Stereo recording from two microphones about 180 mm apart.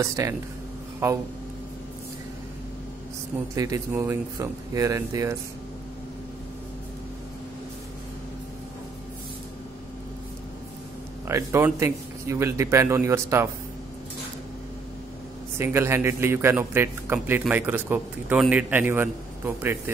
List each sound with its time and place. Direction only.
0.0 s a man's voice: 15° right (ahead or behind)
3.5 s a man's voice: 15° right (ahead or behind)
11.2 s a man's voice: 15° right (ahead or behind)
15.5 s a man's voice: 15° right (ahead or behind)